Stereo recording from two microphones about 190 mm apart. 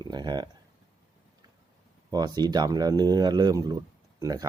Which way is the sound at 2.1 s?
20° right (ahead or behind).